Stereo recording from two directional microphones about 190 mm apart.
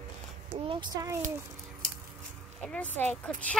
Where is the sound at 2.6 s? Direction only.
5° left (ahead or behind).